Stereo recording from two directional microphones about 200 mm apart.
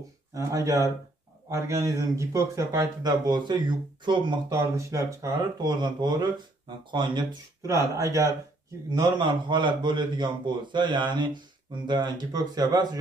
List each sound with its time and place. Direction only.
0.3 s a man's voice: 15° right (ahead or behind)